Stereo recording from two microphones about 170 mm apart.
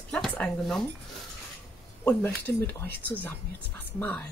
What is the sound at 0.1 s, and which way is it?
Speech, 5° left (ahead or behind).